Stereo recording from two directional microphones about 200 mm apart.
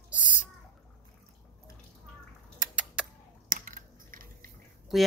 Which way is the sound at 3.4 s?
45° right (ahead or behind).